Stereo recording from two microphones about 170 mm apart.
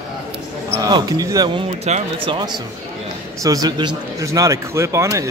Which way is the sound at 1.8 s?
35° right (ahead or behind).